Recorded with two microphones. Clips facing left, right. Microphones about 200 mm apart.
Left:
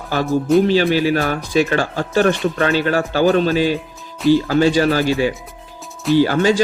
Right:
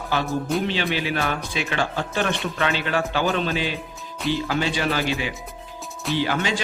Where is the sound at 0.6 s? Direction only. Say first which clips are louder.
Left 10 dB; 40° left (ahead or behind).